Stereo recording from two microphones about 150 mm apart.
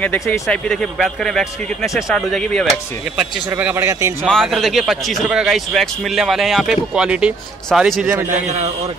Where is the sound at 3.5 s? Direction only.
15° right (ahead or behind).